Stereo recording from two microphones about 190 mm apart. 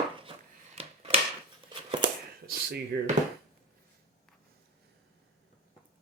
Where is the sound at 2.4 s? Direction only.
55° right (ahead or behind).